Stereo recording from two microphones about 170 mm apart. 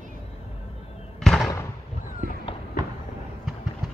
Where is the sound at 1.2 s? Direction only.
5° left (ahead or behind).